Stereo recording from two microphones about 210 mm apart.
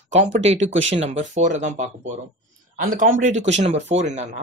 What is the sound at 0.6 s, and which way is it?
Speech, 65° right (ahead or behind).